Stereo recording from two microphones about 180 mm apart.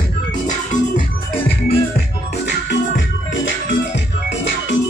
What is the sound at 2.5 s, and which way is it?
Music, 90° left.